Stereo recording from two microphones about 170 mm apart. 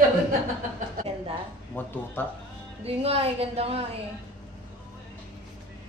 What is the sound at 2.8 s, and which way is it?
A woman's voice, 35° right (ahead or behind).